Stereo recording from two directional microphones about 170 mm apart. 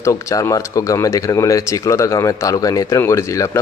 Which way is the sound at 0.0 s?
20° left (ahead or behind).